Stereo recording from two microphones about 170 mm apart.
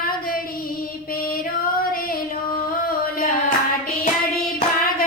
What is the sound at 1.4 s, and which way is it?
Music, 55° left (ahead or behind).